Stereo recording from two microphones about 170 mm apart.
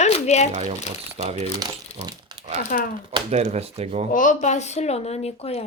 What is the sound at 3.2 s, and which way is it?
Speech, 40° right (ahead or behind).